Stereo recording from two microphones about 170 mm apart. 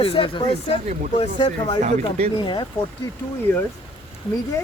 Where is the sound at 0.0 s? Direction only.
30° left (ahead or behind).